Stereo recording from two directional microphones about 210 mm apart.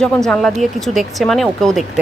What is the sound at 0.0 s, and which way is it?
Speech, 5° left (ahead or behind).